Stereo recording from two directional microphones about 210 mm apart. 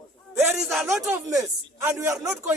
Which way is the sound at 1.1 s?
15° right (ahead or behind).